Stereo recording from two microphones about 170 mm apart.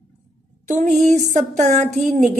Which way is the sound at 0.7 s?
45° right (ahead or behind).